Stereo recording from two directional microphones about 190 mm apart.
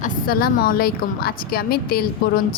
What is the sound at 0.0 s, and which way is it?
A woman's voice, 50° left (ahead or behind).